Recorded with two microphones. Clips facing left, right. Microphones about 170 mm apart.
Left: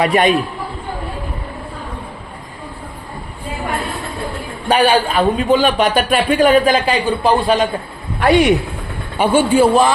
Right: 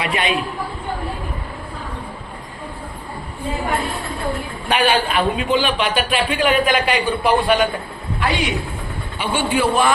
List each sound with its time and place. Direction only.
0.0 s a man's voice: 45° left (ahead or behind)
4.7 s a man's voice: 35° left (ahead or behind)
8.2 s a man's voice: 55° left (ahead or behind)